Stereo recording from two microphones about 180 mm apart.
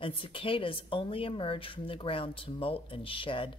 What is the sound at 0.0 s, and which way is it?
Speech, 30° left (ahead or behind).